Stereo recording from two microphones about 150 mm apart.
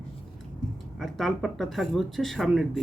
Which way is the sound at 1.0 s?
Centre (ahead or behind).